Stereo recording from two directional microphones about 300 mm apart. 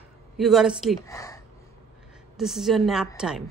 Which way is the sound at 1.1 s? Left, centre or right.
Centre.